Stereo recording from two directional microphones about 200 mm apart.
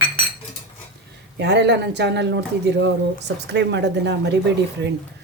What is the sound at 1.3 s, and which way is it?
Speech, 60° right (ahead or behind).